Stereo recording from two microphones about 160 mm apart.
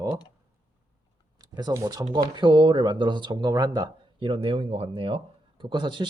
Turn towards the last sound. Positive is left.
turn(degrees=-30)  # may be behind; listen again after turning